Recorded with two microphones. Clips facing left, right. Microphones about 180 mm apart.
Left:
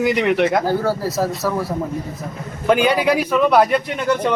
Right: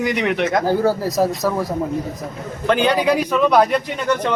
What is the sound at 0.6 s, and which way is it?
A man's voice, 15° right (ahead or behind).